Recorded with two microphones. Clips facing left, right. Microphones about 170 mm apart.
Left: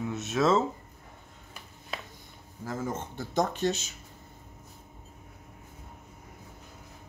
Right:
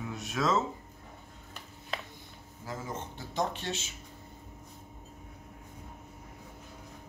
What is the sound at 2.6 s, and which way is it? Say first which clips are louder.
Speech: left 5 dB; 45° left (ahead or behind).